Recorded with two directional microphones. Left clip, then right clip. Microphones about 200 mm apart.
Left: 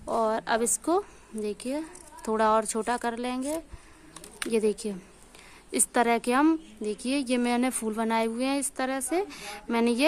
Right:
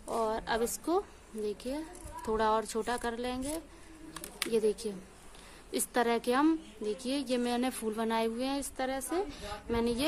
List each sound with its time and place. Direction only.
0.0 s a woman's voice: 40° left (ahead or behind)